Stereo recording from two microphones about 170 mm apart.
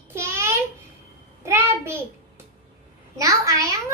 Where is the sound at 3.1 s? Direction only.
20° right (ahead or behind).